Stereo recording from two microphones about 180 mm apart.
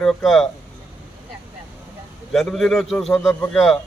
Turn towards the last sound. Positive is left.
turn(degrees=0)  # may be behind; listen again after turning